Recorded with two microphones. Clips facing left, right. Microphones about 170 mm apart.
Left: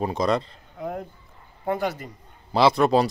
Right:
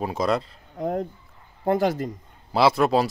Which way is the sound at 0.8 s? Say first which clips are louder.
Right 5 dB; 40° right (ahead or behind).